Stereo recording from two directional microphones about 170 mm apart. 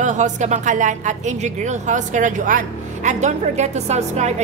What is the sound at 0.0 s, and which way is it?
A woman's voice, 45° right (ahead or behind).